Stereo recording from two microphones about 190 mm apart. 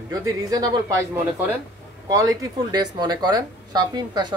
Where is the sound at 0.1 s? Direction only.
20° right (ahead or behind).